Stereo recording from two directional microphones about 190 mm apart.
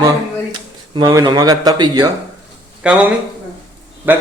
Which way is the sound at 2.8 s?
5° right (ahead or behind).